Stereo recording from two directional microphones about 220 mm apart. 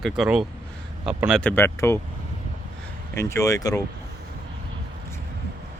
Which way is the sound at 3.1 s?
15° left (ahead or behind).